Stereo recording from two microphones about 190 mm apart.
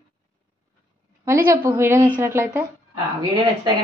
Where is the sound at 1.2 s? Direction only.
15° right (ahead or behind).